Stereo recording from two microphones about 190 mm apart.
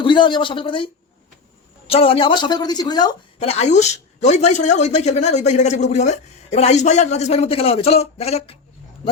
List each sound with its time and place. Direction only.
0.0 s a woman's voice: 25° left (ahead or behind)
1.9 s a woman's voice: 30° left (ahead or behind)
3.4 s a woman's voice: 35° left (ahead or behind)